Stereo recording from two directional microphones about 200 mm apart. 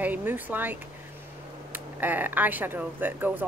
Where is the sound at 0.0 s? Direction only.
10° right (ahead or behind).